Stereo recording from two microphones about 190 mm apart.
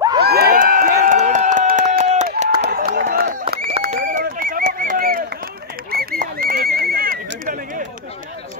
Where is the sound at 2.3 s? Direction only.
35° right (ahead or behind).